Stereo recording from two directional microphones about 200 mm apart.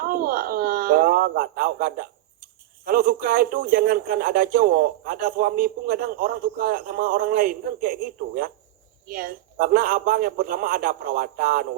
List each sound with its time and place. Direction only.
0.1 s speech: 50° right (ahead or behind)
9.0 s a man's voice: 45° right (ahead or behind)